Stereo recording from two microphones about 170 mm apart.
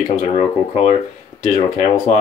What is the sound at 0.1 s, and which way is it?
Speech, 40° left (ahead or behind).